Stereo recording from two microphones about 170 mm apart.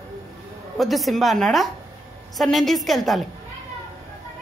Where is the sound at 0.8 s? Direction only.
Centre (ahead or behind).